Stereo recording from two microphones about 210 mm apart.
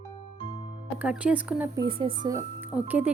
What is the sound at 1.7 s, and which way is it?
Speech, 25° right (ahead or behind).